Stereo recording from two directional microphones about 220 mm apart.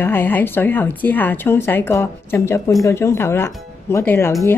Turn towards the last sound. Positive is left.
turn(degrees=10)  # may be behind; listen again after turning